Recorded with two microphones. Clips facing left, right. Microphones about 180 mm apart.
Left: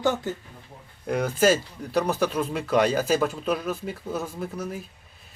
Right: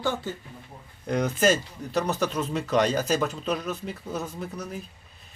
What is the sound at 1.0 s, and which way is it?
Speech, 5° left (ahead or behind).